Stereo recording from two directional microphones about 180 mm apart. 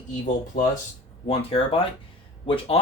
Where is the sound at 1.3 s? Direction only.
30° left (ahead or behind).